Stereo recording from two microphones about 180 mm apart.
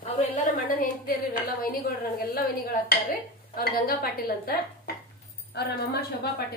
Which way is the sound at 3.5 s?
55° left (ahead or behind).